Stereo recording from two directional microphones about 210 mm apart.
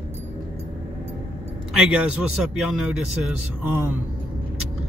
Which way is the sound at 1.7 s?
5° right (ahead or behind).